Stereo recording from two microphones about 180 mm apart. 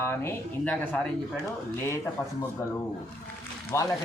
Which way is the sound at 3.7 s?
15° left (ahead or behind).